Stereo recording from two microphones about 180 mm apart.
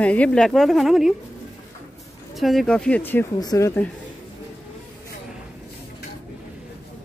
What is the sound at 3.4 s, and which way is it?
Speech, 20° left (ahead or behind).